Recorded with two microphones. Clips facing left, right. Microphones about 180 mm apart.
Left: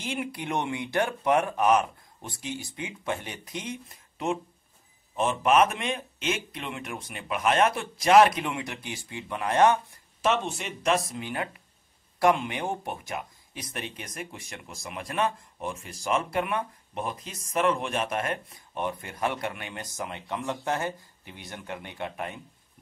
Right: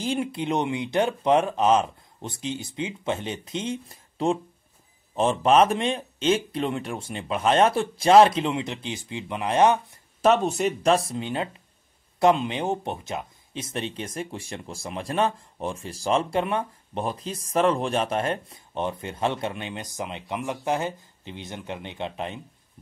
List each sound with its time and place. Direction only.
0.0 s speech: 30° right (ahead or behind)
10.2 s speech: 40° right (ahead or behind); by 22.4 s 20° right (ahead or behind)